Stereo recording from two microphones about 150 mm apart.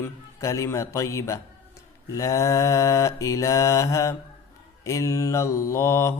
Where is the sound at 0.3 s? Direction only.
20° left (ahead or behind).